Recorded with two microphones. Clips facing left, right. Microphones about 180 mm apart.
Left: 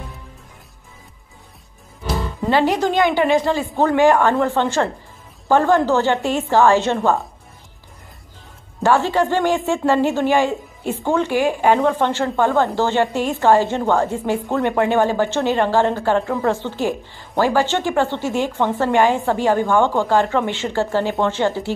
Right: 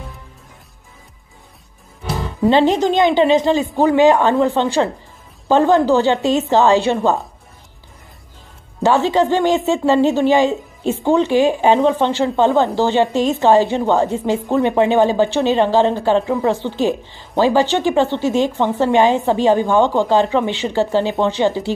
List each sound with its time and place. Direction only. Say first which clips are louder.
2.4 s a woman's voice: right 4 dB; 20° right (ahead or behind)
8.8 s a woman's voice: right 2 dB; 20° right (ahead or behind)